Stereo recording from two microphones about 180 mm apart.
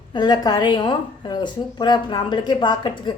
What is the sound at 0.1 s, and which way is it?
A woman's voice, 25° left (ahead or behind).